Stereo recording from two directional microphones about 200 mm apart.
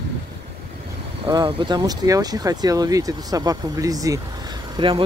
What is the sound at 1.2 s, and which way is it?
Speech, 25° right (ahead or behind).